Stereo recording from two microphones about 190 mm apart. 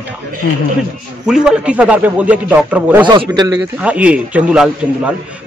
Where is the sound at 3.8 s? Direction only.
5° right (ahead or behind).